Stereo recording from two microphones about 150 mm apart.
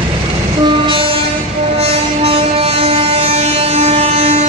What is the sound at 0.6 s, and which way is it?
Train, 35° right (ahead or behind).